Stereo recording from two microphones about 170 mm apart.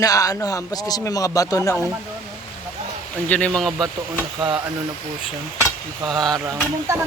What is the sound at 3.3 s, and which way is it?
Speech, 5° left (ahead or behind).